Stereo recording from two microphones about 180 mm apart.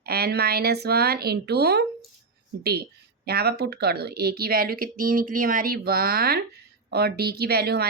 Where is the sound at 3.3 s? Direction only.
60° right (ahead or behind).